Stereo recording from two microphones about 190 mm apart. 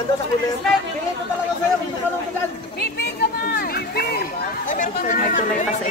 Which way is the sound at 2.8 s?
55° left (ahead or behind).